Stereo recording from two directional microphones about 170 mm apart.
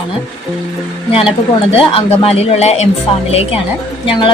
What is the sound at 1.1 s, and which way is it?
A woman's voice, 35° left (ahead or behind).